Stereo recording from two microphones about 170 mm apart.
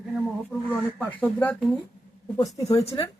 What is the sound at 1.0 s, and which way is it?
Speech, 10° left (ahead or behind).